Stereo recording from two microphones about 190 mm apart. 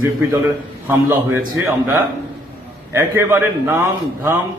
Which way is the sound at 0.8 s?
15° right (ahead or behind).